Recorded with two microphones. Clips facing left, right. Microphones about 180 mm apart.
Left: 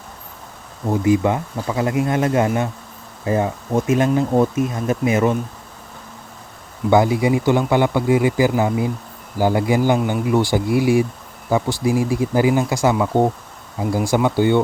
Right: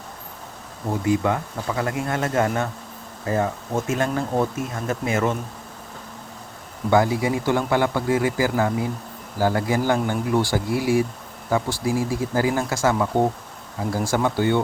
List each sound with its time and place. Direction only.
0.9 s speech: 20° left (ahead or behind)
6.9 s speech: 20° left (ahead or behind)